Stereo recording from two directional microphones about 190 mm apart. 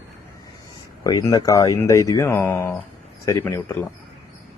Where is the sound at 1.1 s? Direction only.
20° left (ahead or behind).